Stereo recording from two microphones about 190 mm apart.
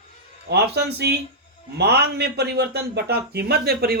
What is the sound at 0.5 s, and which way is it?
Speech, 60° right (ahead or behind).